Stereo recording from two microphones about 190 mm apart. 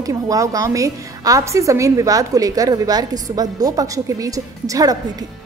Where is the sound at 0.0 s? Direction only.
15° right (ahead or behind).